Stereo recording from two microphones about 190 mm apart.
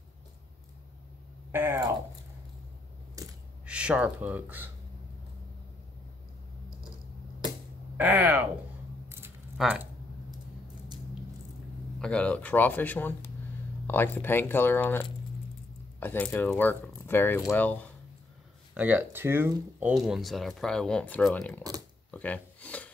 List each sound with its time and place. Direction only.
1.5 s speech: 15° right (ahead or behind)
3.2 s coin: 15° right (ahead or behind)
3.6 s speech: 5° right (ahead or behind)
8.0 s speech: 10° right (ahead or behind)
9.6 s speech: centre (ahead or behind)
12.0 s speech: 5° left (ahead or behind)
18.8 s speech: 10° right (ahead or behind); by 21.6 s 5° left (ahead or behind)
22.1 s a sound: 10° left (ahead or behind)